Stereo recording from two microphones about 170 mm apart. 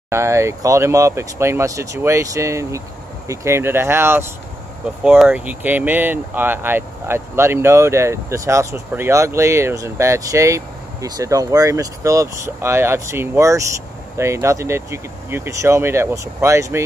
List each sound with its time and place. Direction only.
0.1 s speech: 15° right (ahead or behind)